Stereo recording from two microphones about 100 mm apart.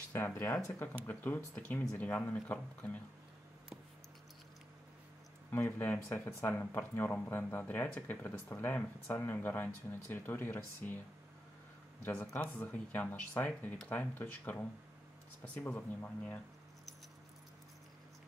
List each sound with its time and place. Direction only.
0.1 s speech: 20° left (ahead or behind)
5.5 s speech: 15° left (ahead or behind)
12.0 s speech: 10° left (ahead or behind)
15.7 s speech: 20° left (ahead or behind)